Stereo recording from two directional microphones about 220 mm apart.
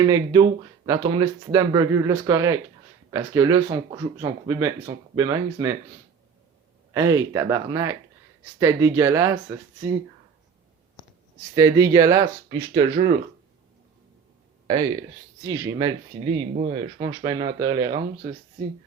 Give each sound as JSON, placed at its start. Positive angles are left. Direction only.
{"t": 0.1, "sound": "speech", "side_deg": -15}
{"t": 6.9, "sound": "speech", "side_deg": -15}
{"t": 11.5, "sound": "speech", "side_deg": -15}
{"t": 15.4, "sound": "speech", "side_deg": -15}